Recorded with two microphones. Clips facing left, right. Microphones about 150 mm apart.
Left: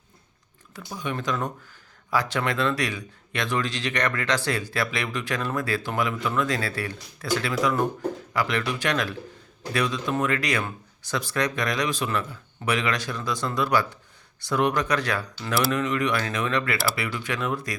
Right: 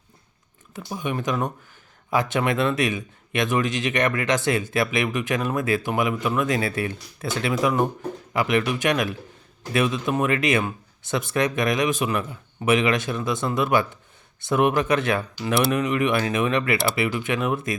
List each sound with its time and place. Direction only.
0.7 s speech: 20° right (ahead or behind)